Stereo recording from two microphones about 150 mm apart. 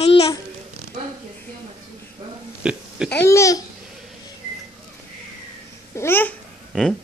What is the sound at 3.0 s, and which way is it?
Babbling, 15° left (ahead or behind).